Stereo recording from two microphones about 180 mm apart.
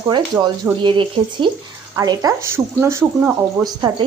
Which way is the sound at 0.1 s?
20° right (ahead or behind).